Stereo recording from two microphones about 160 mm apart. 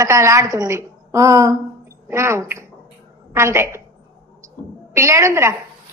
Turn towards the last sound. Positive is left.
turn(degrees=-15)  # may be behind; listen again after turning